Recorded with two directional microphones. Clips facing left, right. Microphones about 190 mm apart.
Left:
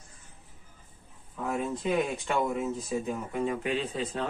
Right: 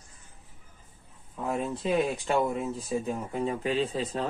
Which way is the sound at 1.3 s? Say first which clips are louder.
Right 1 dB; 30° right (ahead or behind).